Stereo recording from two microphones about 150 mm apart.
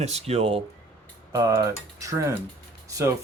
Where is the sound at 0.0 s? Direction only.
45° right (ahead or behind).